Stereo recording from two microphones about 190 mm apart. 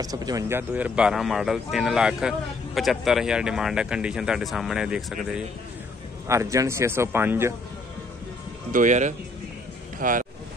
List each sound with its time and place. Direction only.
0.0 s speech: 20° right (ahead or behind); by 5.4 s 5° right (ahead or behind)
6.2 s a man's voice: 15° right (ahead or behind)
8.7 s speech: 40° right (ahead or behind)